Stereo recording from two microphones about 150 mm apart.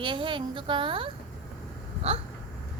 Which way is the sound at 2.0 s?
40° right (ahead or behind).